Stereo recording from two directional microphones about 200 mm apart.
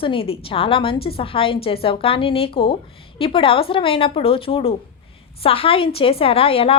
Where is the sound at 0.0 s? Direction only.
25° left (ahead or behind).